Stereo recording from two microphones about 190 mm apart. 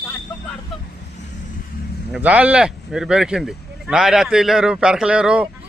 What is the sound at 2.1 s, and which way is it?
Speech, 5° right (ahead or behind).